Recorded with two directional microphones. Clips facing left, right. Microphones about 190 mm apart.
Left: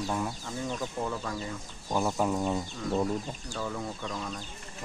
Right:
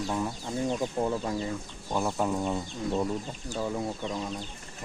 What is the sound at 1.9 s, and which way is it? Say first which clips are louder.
Speech: even; centre (ahead or behind).